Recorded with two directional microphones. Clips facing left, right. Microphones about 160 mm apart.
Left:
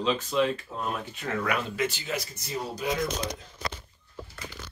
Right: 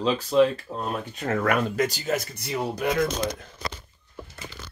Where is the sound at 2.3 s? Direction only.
65° right (ahead or behind).